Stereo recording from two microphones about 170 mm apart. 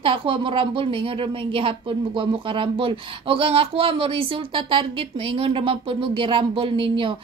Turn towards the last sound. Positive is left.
turn(degrees=-30)  # may be behind; listen again after turning